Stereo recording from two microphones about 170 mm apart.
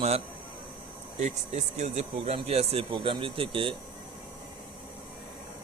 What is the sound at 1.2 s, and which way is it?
Speech, 40° right (ahead or behind).